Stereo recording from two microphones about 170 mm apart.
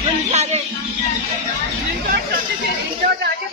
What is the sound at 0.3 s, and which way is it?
Music, 40° right (ahead or behind).